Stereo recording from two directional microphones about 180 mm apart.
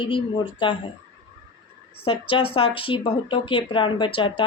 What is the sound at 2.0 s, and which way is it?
Speech, 30° left (ahead or behind).